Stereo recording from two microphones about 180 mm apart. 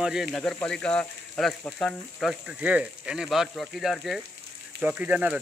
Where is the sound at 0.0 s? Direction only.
5° right (ahead or behind).